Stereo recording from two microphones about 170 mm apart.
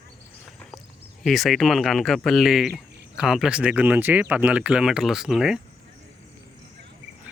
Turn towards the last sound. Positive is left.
turn(degrees=0)  # may be behind; listen again after turning